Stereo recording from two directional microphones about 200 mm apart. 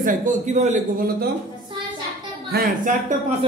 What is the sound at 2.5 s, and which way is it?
Speech, 45° right (ahead or behind).